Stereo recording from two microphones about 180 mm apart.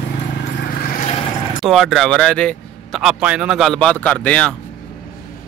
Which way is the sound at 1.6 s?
Centre (ahead or behind).